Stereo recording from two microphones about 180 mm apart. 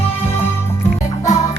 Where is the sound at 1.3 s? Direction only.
20° left (ahead or behind).